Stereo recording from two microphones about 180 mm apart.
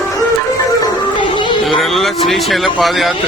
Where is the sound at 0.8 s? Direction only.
25° left (ahead or behind).